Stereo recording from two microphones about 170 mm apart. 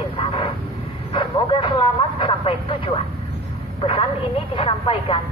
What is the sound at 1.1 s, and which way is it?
A man's voice, 30° left (ahead or behind).